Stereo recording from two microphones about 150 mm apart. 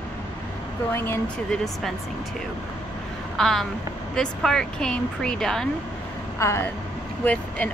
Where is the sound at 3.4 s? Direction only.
Centre (ahead or behind).